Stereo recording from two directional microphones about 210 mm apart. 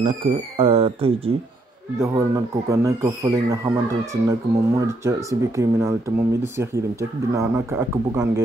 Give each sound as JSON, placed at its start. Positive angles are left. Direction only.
{"t": 0.0, "sound": "speech", "side_deg": -30}
{"t": 2.0, "sound": "speech", "side_deg": -15}